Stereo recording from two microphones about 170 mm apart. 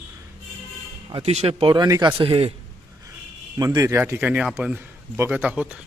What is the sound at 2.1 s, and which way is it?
Speech, 30° right (ahead or behind).